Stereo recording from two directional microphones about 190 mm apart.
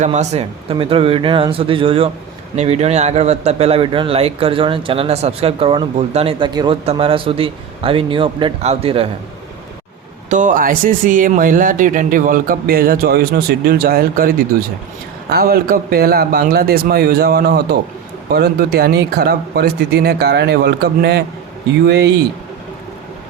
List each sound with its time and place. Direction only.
0.0 s a man's voice: 35° right (ahead or behind)
10.2 s speech: 40° right (ahead or behind); by 22.1 s 60° right (ahead or behind)